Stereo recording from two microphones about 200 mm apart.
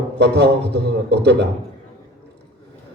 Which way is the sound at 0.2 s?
55° right (ahead or behind).